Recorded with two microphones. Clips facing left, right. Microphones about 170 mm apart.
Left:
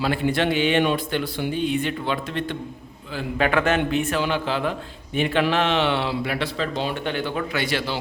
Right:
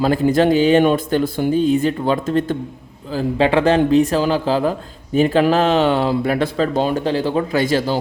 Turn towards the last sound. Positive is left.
turn(degrees=-45)  # may be behind; listen again after turning